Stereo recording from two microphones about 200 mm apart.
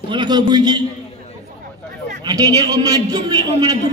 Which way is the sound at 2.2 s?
20° right (ahead or behind).